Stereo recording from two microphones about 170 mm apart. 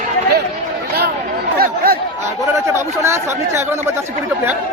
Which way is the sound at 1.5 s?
65° right (ahead or behind).